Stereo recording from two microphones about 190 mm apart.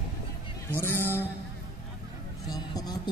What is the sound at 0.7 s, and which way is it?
Speech, 10° left (ahead or behind).